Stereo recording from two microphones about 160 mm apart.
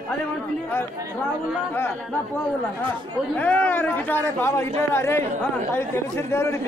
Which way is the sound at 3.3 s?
10° left (ahead or behind).